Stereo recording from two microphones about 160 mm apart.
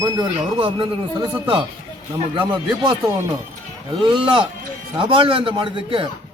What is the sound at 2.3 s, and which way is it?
A man's voice, 30° right (ahead or behind).